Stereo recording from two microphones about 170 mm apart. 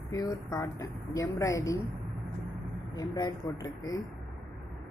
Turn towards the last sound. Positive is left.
turn(degrees=25)  # may be behind; listen again after turning